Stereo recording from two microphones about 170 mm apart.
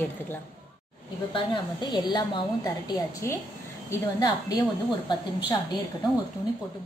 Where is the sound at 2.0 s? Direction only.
25° left (ahead or behind).